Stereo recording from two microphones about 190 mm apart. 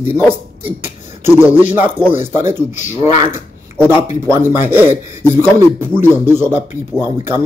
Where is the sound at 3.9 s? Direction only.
15° right (ahead or behind).